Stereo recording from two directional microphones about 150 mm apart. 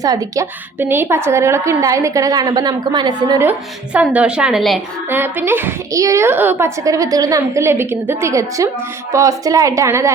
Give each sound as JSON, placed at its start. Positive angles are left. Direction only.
{"t": 0.0, "sound": "a woman's voice", "side_deg": -25}
{"t": 3.9, "sound": "a woman's voice", "side_deg": -10}
{"t": 5.0, "sound": "a woman's voice", "side_deg": -15}